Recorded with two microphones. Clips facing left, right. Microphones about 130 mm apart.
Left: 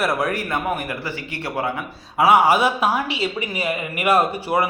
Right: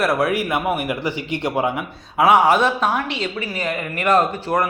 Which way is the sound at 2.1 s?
Centre (ahead or behind).